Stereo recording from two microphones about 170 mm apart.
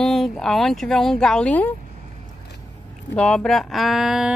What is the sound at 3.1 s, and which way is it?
Speech, 5° left (ahead or behind).